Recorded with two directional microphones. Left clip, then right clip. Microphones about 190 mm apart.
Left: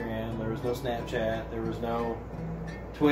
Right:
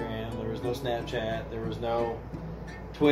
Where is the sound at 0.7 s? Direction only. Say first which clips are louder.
Right 2 dB; 30° right (ahead or behind).